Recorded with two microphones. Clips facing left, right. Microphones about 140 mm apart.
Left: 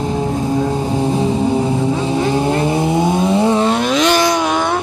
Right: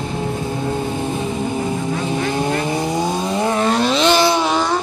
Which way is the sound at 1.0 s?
30° left (ahead or behind).